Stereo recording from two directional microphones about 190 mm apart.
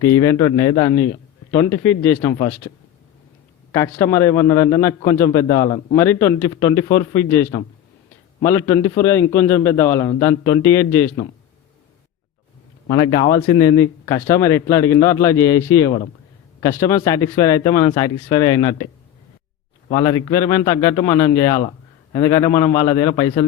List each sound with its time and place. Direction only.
0.0 s a man's voice: 15° left (ahead or behind)
3.7 s a man's voice: 15° left (ahead or behind)
12.9 s a man's voice: 20° left (ahead or behind)
19.9 s a man's voice: 20° left (ahead or behind)